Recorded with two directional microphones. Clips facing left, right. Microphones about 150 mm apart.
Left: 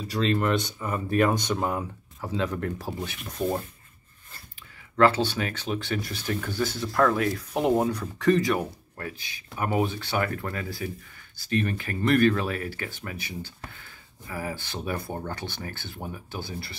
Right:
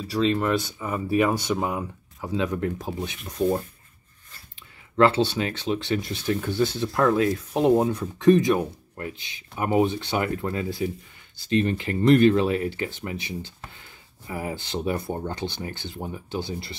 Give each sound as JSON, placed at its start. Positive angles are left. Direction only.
{"t": 0.1, "sound": "speech", "side_deg": -5}
{"t": 4.9, "sound": "speech", "side_deg": -25}